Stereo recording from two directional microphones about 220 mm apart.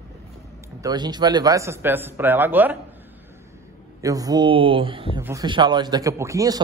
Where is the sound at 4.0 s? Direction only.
15° right (ahead or behind).